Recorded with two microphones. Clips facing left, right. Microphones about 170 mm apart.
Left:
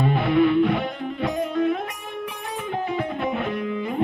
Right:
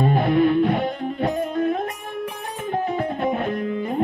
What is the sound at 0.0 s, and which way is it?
Music, 45° right (ahead or behind).